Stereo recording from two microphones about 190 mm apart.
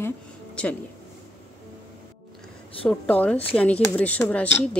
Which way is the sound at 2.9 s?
5° left (ahead or behind).